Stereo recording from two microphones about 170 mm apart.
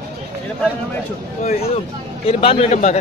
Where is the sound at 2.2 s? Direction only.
35° left (ahead or behind).